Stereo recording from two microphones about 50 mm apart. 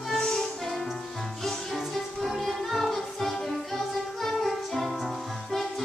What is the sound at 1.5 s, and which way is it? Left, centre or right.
Music, centre.